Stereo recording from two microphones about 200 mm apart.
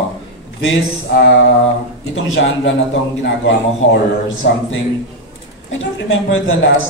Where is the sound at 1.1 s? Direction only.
60° left (ahead or behind).